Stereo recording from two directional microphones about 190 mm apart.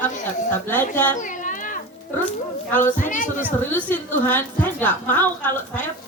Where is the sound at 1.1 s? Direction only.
40° left (ahead or behind).